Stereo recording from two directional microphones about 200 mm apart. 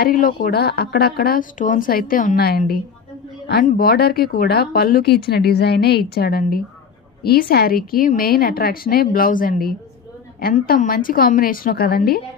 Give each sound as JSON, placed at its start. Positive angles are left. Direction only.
{"t": 0.0, "sound": "speech", "side_deg": 45}